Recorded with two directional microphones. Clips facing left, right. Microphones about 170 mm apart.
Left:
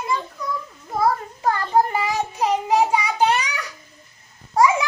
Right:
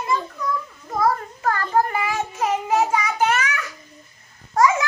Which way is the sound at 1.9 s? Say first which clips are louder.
Left 1 dB; 20° left (ahead or behind).